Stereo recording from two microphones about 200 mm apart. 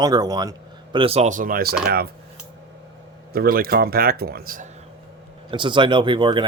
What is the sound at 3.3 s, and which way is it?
Speech, 50° right (ahead or behind).